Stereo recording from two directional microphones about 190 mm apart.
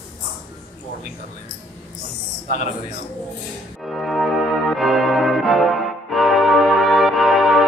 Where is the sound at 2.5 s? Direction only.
40° left (ahead or behind).